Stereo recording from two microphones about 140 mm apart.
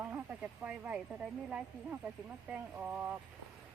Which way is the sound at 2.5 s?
10° right (ahead or behind).